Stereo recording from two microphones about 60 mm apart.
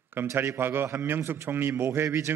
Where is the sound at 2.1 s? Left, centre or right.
Right.